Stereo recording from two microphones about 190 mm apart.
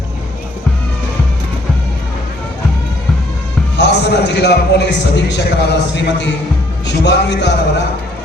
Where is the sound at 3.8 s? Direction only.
65° left (ahead or behind).